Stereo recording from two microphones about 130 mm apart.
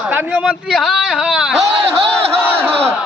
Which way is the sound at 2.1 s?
15° right (ahead or behind).